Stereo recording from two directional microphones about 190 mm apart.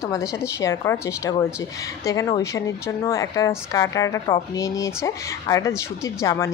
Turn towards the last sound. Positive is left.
turn(degrees=15)  # may be behind; listen again after turning